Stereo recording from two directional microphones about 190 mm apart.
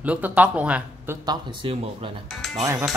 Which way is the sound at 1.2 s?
25° right (ahead or behind).